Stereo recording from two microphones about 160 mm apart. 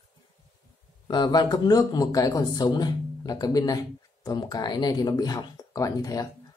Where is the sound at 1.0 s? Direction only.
25° left (ahead or behind).